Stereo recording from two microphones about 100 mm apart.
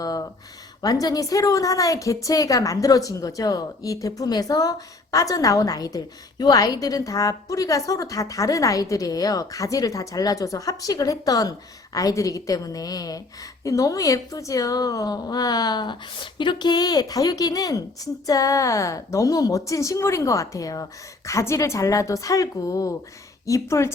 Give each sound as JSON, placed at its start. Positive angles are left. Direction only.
{"t": 0.0, "sound": "a woman's voice", "side_deg": 35}